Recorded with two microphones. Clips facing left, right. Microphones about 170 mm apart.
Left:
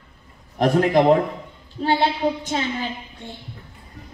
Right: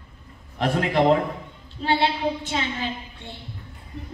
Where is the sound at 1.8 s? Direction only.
45° left (ahead or behind).